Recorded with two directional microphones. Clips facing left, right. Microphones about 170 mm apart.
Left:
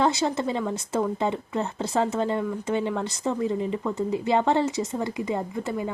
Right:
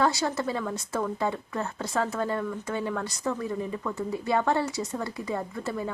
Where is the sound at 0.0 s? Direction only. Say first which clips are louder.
Left 2 dB; 20° left (ahead or behind).